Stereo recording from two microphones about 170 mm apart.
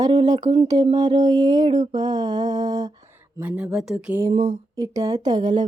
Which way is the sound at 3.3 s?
10° right (ahead or behind).